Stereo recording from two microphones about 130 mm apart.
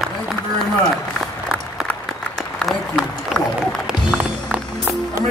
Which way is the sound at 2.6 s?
Centre (ahead or behind).